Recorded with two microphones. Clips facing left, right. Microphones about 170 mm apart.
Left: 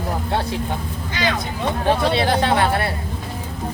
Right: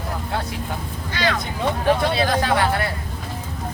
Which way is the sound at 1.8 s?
30° left (ahead or behind).